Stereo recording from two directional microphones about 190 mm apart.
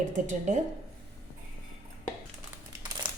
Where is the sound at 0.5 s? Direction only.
40° right (ahead or behind).